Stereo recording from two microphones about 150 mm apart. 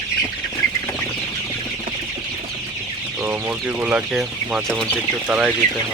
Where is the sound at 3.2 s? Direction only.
15° right (ahead or behind); by 4.9 s centre (ahead or behind).